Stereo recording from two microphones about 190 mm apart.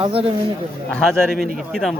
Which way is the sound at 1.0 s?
Centre (ahead or behind).